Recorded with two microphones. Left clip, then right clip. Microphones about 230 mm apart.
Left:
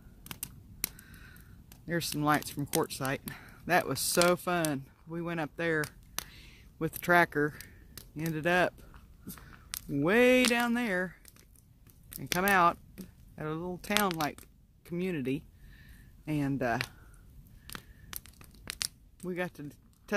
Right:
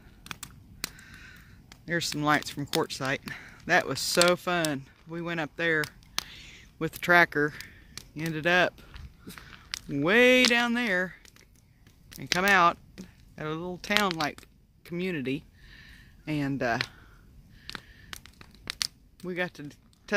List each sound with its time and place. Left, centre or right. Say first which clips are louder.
0.9 s crow: right 6 dB; centre
1.9 s speech: right 3 dB; centre
9.8 s speech: right 4 dB; centre
12.4 s speech: right 4 dB; centre
13.9 s speech: right 4 dB; right
14.4 s a sound: right 5 dB; centre
17.6 s tearing: right 5 dB; right
19.2 s speech: right 4 dB; centre